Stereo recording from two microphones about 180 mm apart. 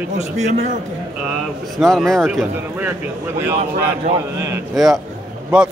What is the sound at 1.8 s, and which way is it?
Speech, centre (ahead or behind).